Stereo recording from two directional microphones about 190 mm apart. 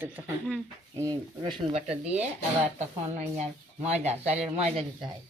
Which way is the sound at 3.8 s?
35° right (ahead or behind).